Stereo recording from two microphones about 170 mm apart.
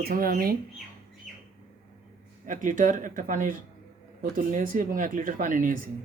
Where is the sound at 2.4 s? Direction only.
50° right (ahead or behind).